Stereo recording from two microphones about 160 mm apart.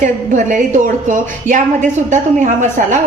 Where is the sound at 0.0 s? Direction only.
50° right (ahead or behind).